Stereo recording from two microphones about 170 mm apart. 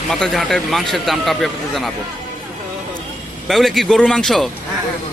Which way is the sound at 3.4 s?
Centre (ahead or behind).